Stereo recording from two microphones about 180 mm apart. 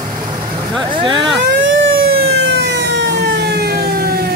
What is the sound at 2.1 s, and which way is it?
Siren, 65° right (ahead or behind).